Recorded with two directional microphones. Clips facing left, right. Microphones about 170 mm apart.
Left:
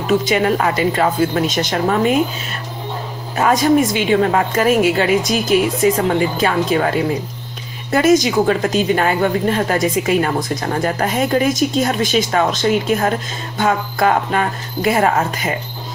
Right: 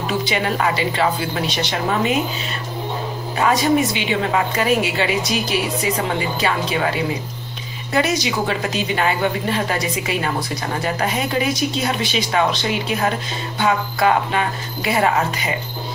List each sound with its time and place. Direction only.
0.0 s a woman's voice: 45° left (ahead or behind)
3.9 s a woman's voice: 45° left (ahead or behind)